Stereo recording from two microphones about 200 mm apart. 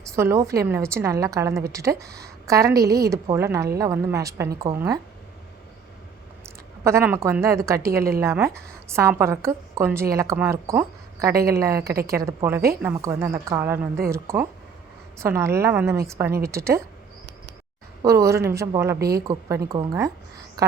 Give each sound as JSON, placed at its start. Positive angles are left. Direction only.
{"t": 0.2, "sound": "a woman's voice", "side_deg": -15}
{"t": 6.8, "sound": "a woman's voice", "side_deg": -10}
{"t": 18.0, "sound": "a woman's voice", "side_deg": -15}
{"t": 18.9, "sound": "a woman's voice", "side_deg": -50}
{"t": 19.3, "sound": "a woman's voice", "side_deg": -15}